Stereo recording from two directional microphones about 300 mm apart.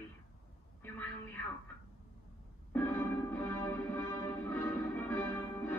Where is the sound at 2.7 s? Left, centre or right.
Centre.